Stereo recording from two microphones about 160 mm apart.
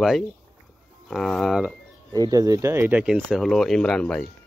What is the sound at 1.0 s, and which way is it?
Speech, 5° left (ahead or behind).